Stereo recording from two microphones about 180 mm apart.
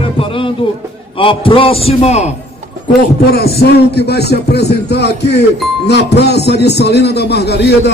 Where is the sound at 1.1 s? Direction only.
30° left (ahead or behind).